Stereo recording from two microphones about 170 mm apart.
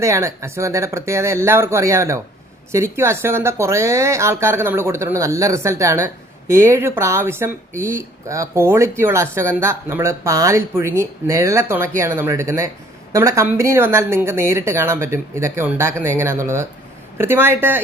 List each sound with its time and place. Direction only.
0.0 s speech: 15° right (ahead or behind)